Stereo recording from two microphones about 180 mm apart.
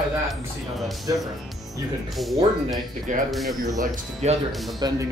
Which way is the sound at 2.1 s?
Centre (ahead or behind).